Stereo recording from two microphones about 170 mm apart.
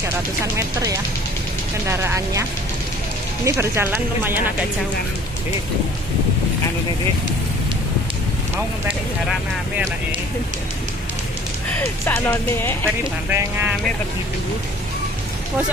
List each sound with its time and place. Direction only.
1.9 s speech: 15° right (ahead or behind)
3.4 s speech: 15° right (ahead or behind)
12.1 s speech: 10° left (ahead or behind)
13.3 s speech: 10° right (ahead or behind)